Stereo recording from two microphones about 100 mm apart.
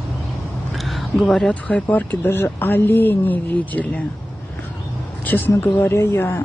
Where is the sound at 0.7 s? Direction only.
Centre (ahead or behind); by 4.0 s 15° left (ahead or behind).